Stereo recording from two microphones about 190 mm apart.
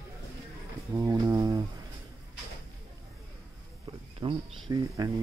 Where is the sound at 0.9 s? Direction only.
15° right (ahead or behind).